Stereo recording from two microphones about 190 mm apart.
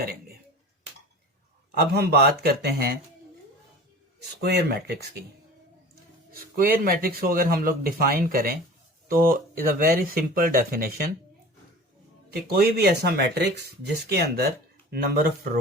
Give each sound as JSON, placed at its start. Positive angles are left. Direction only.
{"t": 1.7, "sound": "speech", "side_deg": -55}
{"t": 4.4, "sound": "speech", "side_deg": -60}
{"t": 6.3, "sound": "speech", "side_deg": -50}
{"t": 12.3, "sound": "speech", "side_deg": -55}